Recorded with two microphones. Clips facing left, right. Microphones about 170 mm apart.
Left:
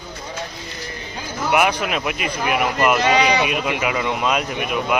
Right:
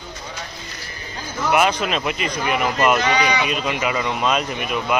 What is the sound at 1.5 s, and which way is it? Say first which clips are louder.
Speech: even; 15° left (ahead or behind).